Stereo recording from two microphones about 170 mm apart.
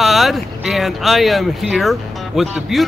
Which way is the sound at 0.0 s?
Centre (ahead or behind).